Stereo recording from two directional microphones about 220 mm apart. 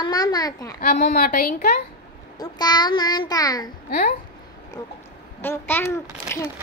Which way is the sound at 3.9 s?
45° left (ahead or behind).